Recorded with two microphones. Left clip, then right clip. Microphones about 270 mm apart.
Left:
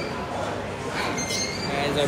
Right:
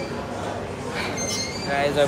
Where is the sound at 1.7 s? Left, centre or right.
Centre.